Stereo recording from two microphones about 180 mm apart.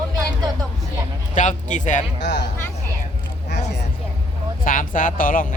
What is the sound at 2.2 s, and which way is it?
Speech, 70° left (ahead or behind).